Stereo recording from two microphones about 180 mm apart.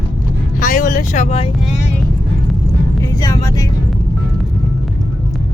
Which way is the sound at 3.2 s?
20° left (ahead or behind).